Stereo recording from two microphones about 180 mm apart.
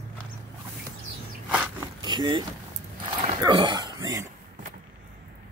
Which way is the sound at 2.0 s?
25° right (ahead or behind).